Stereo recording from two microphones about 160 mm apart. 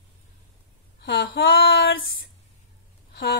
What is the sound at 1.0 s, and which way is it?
Speech, 90° left.